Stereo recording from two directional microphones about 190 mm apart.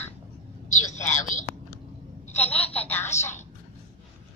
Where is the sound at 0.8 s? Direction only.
40° left (ahead or behind).